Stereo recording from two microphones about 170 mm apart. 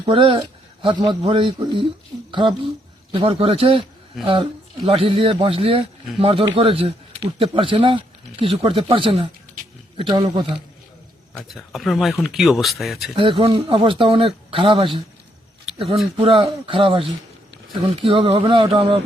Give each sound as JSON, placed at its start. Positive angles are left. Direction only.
{"t": 0.0, "sound": "speech", "side_deg": -30}
{"t": 4.1, "sound": "speech", "side_deg": 0}
{"t": 4.9, "sound": "a man's voice", "side_deg": -30}
{"t": 11.4, "sound": "speech", "side_deg": 0}
{"t": 13.1, "sound": "speech", "side_deg": -30}
{"t": 16.1, "sound": "speech", "side_deg": -35}